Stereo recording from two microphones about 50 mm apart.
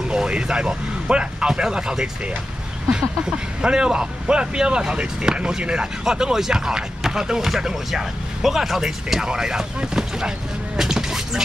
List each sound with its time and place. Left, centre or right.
0.1 s speech: centre
10.8 s music: centre